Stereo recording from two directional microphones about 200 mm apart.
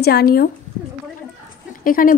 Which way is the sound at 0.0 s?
50° left (ahead or behind).